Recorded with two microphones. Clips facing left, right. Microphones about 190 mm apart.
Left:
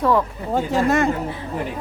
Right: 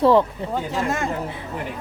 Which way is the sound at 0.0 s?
30° right (ahead or behind).